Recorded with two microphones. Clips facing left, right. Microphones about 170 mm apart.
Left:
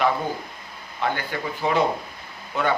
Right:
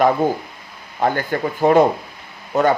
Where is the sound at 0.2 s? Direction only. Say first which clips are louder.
Right 9 dB; 45° right (ahead or behind).